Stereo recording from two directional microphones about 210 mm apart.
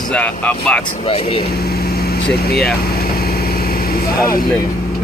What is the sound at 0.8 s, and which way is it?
Speech, 30° left (ahead or behind).